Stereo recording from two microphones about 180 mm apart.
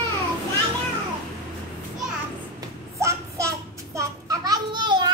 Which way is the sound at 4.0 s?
20° right (ahead or behind).